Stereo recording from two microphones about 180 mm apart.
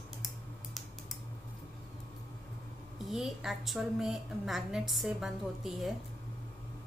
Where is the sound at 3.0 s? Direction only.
Centre (ahead or behind).